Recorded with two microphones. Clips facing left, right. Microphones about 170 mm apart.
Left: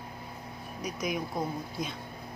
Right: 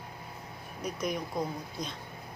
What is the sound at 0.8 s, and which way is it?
Speech, centre (ahead or behind).